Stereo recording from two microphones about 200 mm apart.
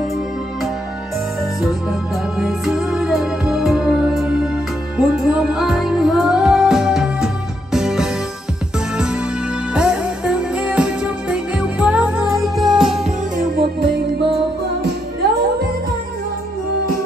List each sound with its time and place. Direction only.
1.6 s music: centre (ahead or behind)
13.4 s music: 50° right (ahead or behind)